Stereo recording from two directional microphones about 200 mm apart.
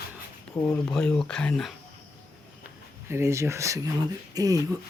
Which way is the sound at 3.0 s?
15° right (ahead or behind).